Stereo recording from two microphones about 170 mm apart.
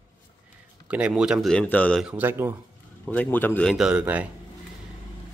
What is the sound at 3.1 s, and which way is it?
Speech, 10° left (ahead or behind).